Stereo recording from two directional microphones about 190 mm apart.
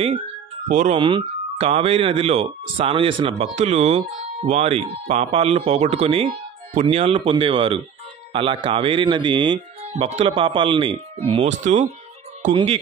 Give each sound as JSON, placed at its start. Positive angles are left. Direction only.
{"t": 0.7, "sound": "speech", "side_deg": -40}
{"t": 0.9, "sound": "speech", "side_deg": -25}